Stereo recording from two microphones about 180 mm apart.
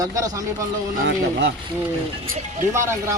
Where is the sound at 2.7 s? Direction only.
15° right (ahead or behind).